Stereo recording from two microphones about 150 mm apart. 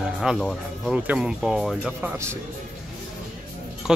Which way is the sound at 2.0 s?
15° right (ahead or behind).